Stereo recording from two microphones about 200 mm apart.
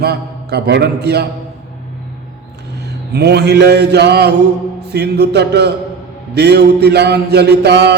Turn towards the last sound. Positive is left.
turn(degrees=-55)  # may be behind; listen again after turning